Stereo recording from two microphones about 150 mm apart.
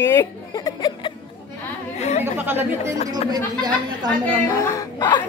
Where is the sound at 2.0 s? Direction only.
50° left (ahead or behind).